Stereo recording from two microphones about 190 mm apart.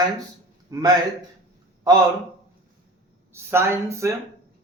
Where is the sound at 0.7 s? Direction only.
20° right (ahead or behind).